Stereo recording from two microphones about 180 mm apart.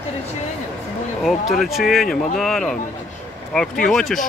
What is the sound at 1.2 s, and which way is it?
Speech, centre (ahead or behind).